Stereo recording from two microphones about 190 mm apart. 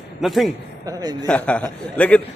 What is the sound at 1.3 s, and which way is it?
Speech, 5° left (ahead or behind).